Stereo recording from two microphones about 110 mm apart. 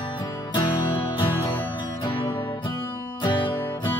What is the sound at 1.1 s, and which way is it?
Music, 50° left (ahead or behind).